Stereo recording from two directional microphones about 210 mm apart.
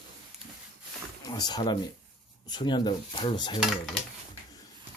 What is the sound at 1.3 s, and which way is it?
Speech, 20° left (ahead or behind).